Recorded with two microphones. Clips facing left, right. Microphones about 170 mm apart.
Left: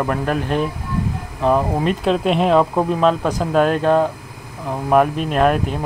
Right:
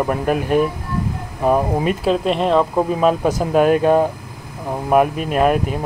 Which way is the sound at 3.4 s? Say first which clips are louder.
Right 3 dB; 10° right (ahead or behind).